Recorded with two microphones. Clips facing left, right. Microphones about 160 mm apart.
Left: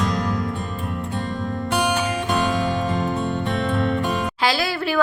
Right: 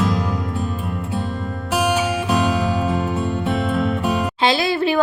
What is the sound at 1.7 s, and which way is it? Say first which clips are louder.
Music: right 3 dB; 5° right (ahead or behind).